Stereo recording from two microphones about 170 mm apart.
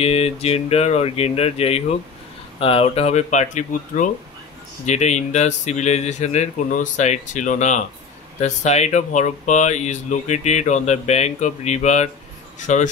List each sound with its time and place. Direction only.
0.0 s speech: 35° left (ahead or behind)